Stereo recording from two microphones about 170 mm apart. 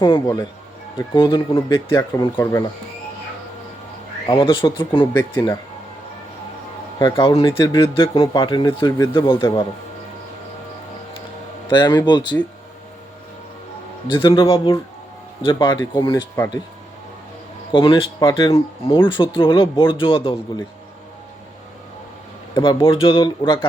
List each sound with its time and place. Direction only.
0.0 s speech: 25° left (ahead or behind)
4.3 s speech: 30° left (ahead or behind)
5.3 s speech: 15° left (ahead or behind)
7.0 s speech: 30° left (ahead or behind)
11.9 s speech: 25° left (ahead or behind)
14.1 s speech: 30° left (ahead or behind)
17.7 s speech: 30° left (ahead or behind)
22.5 s speech: 30° left (ahead or behind)